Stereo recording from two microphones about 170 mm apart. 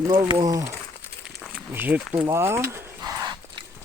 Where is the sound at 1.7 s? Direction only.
10° right (ahead or behind).